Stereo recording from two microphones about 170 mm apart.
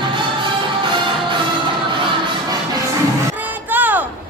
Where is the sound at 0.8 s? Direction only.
30° right (ahead or behind).